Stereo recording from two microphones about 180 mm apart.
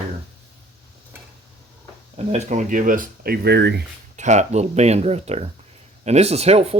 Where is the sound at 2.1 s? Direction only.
40° right (ahead or behind); by 3.8 s 70° right (ahead or behind).